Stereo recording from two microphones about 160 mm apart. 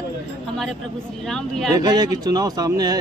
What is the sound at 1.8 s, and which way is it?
Speech, 25° right (ahead or behind).